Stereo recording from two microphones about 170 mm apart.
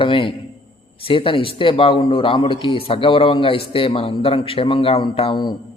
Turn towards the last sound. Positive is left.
turn(degrees=30)  # may be behind; listen again after turning